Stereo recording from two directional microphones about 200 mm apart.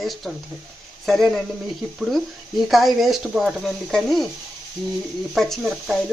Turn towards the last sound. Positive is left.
turn(degrees=0)  # may be behind; listen again after turning